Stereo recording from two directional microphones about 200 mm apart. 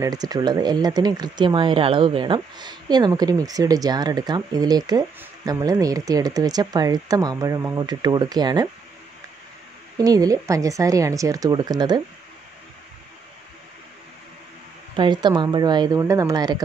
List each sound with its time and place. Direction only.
0.0 s speech: 20° right (ahead or behind)
9.9 s speech: 20° right (ahead or behind)
15.0 s speech: 20° right (ahead or behind)